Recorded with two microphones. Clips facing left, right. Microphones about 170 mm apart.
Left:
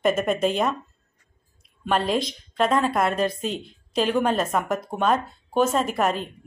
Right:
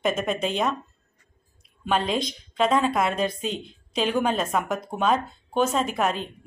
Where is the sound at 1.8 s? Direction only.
Centre (ahead or behind).